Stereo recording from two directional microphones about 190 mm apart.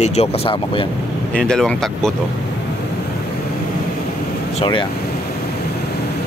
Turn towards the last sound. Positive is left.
turn(degrees=25)  # may be behind; listen again after turning